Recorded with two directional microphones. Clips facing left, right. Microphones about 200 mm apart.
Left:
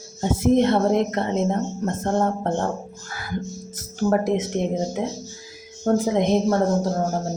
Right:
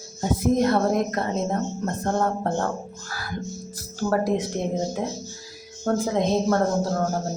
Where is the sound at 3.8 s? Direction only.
20° left (ahead or behind).